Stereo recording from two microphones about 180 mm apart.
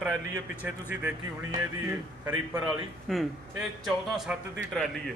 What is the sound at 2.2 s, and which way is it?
A man's voice, 10° right (ahead or behind).